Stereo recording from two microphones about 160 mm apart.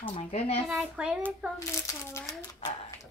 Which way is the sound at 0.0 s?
40° left (ahead or behind).